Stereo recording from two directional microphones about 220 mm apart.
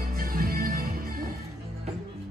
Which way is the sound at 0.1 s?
40° right (ahead or behind).